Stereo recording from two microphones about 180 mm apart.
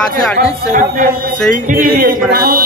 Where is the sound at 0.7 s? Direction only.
45° right (ahead or behind).